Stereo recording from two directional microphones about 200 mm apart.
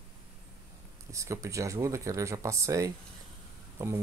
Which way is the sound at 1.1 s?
15° right (ahead or behind).